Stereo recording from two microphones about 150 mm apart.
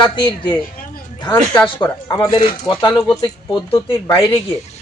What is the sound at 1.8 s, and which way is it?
Speech, 25° left (ahead or behind).